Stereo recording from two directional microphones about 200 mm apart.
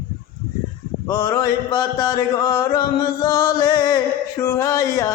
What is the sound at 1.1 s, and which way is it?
Mantra, 15° left (ahead or behind).